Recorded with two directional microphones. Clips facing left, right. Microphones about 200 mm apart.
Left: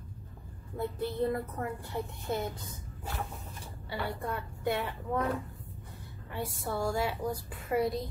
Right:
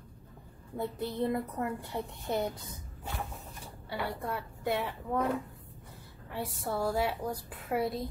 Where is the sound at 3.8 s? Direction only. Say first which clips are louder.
Even; centre (ahead or behind).